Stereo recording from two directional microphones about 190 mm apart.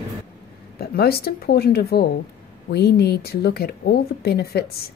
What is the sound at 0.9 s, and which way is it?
A woman's voice, 55° left (ahead or behind).